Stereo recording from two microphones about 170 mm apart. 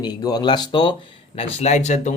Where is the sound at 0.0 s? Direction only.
25° left (ahead or behind).